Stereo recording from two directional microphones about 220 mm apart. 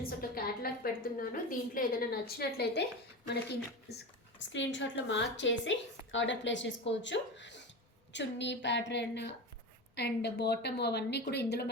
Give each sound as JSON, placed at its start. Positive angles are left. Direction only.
{"t": 0.0, "sound": "a woman's voice", "side_deg": 40}
{"t": 3.8, "sound": "a woman's voice", "side_deg": 50}